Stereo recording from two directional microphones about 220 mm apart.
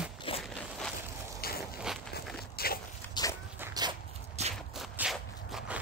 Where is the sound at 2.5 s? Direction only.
45° left (ahead or behind).